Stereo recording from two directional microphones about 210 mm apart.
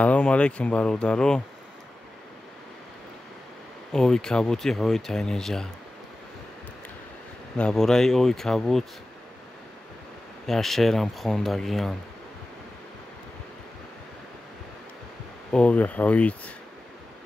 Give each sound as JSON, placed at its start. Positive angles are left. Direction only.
{"t": 0.0, "sound": "speech", "side_deg": 5}
{"t": 3.9, "sound": "speech", "side_deg": 5}
{"t": 7.5, "sound": "speech", "side_deg": 5}
{"t": 10.4, "sound": "speech", "side_deg": 0}
{"t": 15.5, "sound": "speech", "side_deg": 5}